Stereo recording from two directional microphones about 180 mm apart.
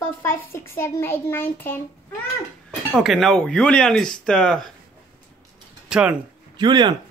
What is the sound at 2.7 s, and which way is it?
Speech, centre (ahead or behind).